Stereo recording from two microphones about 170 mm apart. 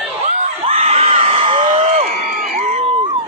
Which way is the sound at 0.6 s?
35° right (ahead or behind).